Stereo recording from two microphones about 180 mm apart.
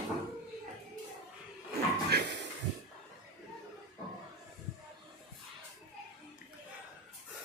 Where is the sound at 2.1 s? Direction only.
65° right (ahead or behind).